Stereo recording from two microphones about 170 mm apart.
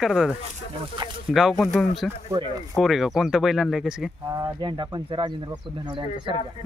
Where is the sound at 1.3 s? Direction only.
Centre (ahead or behind).